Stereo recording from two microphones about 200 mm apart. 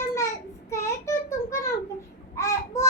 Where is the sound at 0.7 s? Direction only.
15° left (ahead or behind).